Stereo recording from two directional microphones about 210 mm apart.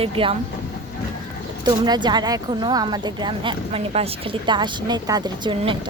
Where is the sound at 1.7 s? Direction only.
20° right (ahead or behind).